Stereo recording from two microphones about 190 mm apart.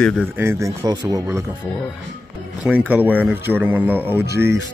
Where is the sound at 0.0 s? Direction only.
Centre (ahead or behind).